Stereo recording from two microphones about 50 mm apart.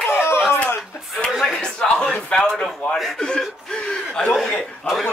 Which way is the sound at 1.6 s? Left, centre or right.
Centre.